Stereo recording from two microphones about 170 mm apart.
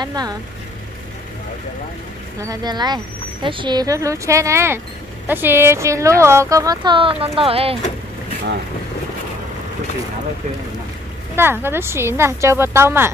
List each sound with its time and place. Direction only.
0.0 s speech: 25° right (ahead or behind)
2.4 s a woman's voice: 25° right (ahead or behind)
11.3 s a woman's voice: 15° right (ahead or behind)